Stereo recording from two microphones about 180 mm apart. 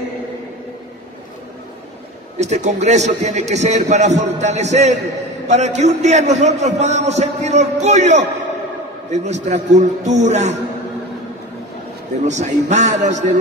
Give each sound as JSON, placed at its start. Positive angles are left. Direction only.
{"t": 2.3, "sound": "a man's voice", "side_deg": -40}
{"t": 12.3, "sound": "a man's voice", "side_deg": -40}